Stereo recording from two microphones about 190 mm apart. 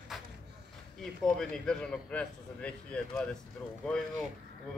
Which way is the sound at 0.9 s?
Centre (ahead or behind).